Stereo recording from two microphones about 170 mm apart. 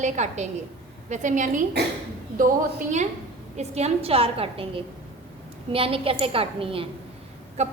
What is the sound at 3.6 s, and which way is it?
A woman's voice, 40° right (ahead or behind).